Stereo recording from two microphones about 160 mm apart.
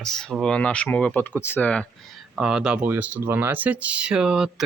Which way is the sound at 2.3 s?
5° right (ahead or behind).